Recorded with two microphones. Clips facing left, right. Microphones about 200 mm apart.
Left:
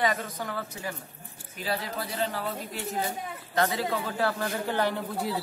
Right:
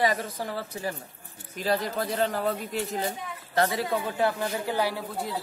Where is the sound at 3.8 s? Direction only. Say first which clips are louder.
Right 2 dB; 20° right (ahead or behind); by 5.3 s 5° right (ahead or behind).